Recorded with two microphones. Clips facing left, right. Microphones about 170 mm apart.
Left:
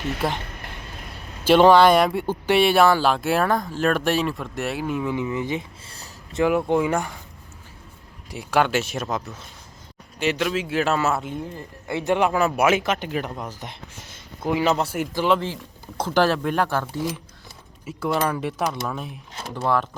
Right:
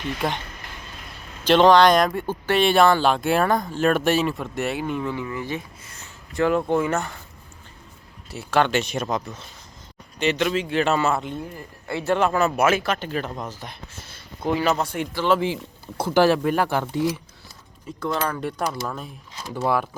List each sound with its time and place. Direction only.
0.2 s speech: centre (ahead or behind)
1.5 s speech: 10° left (ahead or behind)
5.1 s speech: 20° left (ahead or behind)
5.8 s a sound: 35° left (ahead or behind)
6.3 s speech: 10° left (ahead or behind)
8.3 s speech: 10° left (ahead or behind)
11.5 s speech: 20° left (ahead or behind)
13.7 s a sound: 15° left (ahead or behind)
14.6 s speech: 20° left (ahead or behind)
16.0 s speech: 10° right (ahead or behind)
17.8 s speech: 5° left (ahead or behind)
19.6 s speech: 10° right (ahead or behind)